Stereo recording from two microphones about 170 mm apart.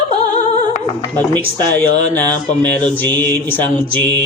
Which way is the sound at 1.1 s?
10° left (ahead or behind).